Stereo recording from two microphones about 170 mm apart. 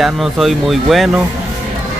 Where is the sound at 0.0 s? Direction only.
Centre (ahead or behind).